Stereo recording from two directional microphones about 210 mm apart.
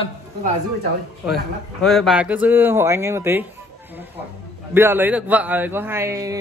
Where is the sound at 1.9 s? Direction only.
Centre (ahead or behind).